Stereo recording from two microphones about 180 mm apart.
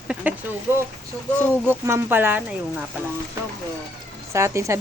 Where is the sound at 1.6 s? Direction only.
10° right (ahead or behind).